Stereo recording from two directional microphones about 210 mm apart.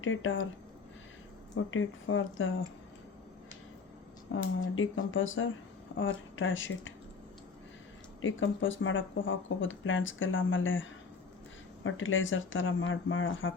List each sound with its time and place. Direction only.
0.0 s speech: 65° left (ahead or behind)
1.5 s speech: 70° left (ahead or behind)
4.3 s speech: 70° left (ahead or behind)
8.2 s speech: 65° left (ahead or behind)